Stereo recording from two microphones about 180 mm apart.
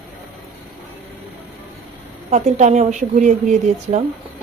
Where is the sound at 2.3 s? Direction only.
40° right (ahead or behind).